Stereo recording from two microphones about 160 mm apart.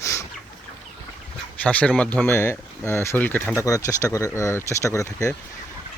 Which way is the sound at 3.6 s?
20° left (ahead or behind).